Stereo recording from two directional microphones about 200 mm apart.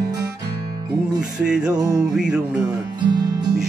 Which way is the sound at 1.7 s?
20° right (ahead or behind).